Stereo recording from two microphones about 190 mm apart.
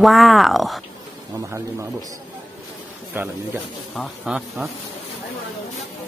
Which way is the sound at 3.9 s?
Centre (ahead or behind).